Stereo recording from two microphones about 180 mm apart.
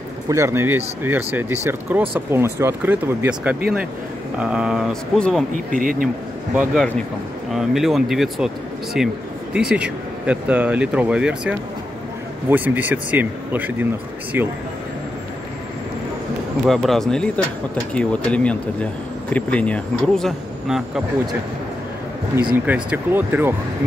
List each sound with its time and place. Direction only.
0.3 s speech: 15° right (ahead or behind); by 5.4 s centre (ahead or behind)
5.7 s speech: 50° right (ahead or behind)
6.5 s speech: 5° right (ahead or behind)
16.6 s speech: centre (ahead or behind)
22.3 s speech: 15° right (ahead or behind)